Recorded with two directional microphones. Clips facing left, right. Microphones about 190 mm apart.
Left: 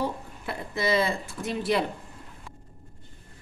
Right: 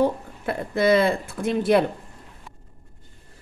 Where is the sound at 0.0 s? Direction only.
55° right (ahead or behind).